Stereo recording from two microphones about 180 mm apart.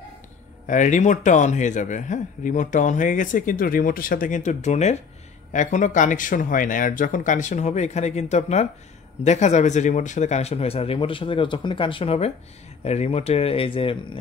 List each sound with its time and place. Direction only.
0.7 s speech: 45° left (ahead or behind)